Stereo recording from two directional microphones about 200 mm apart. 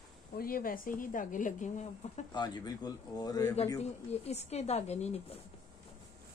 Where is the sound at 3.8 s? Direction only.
30° left (ahead or behind).